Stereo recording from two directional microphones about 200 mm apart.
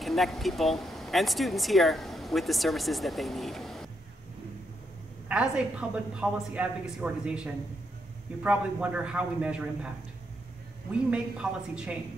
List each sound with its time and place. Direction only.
0.0 s speech: centre (ahead or behind)
5.3 s a woman's voice: 5° right (ahead or behind)
10.9 s a woman's voice: 5° right (ahead or behind)